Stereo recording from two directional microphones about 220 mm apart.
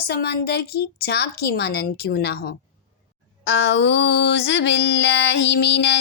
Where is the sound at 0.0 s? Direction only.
45° left (ahead or behind).